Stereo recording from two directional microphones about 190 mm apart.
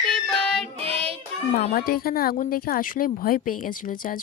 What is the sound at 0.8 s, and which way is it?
Child singing, 30° right (ahead or behind).